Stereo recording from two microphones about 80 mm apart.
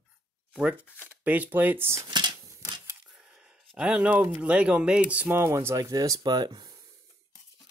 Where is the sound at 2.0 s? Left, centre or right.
Right.